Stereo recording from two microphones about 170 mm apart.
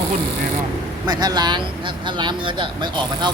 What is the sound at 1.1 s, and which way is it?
Speech, 25° right (ahead or behind).